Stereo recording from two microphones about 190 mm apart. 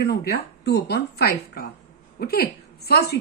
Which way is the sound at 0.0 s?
60° left (ahead or behind).